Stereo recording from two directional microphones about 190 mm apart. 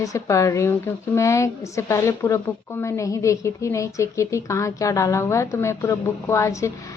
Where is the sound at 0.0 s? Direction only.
15° left (ahead or behind).